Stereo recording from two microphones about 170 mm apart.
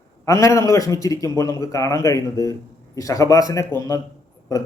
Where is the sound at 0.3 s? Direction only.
20° left (ahead or behind).